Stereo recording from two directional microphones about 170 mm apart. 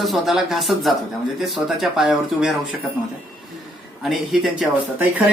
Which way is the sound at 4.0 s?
Centre (ahead or behind).